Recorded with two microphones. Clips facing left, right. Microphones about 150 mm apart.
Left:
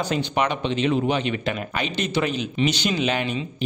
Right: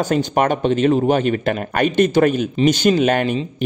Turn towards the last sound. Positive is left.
turn(degrees=-50)  # may be behind; listen again after turning